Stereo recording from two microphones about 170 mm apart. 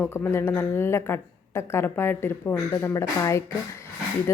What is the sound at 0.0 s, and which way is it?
A woman's voice, 15° left (ahead or behind).